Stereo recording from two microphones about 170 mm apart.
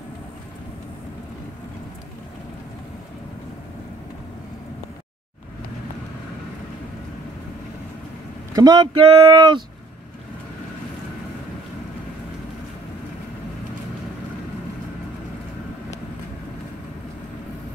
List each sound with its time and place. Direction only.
8.5 s speech: 25° right (ahead or behind)